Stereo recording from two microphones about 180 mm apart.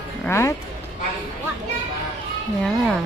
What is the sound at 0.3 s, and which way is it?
Speech, 15° left (ahead or behind).